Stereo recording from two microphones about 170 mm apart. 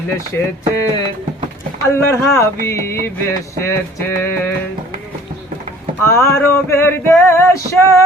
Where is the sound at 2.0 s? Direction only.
15° left (ahead or behind).